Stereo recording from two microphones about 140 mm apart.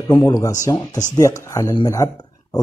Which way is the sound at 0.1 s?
30° left (ahead or behind).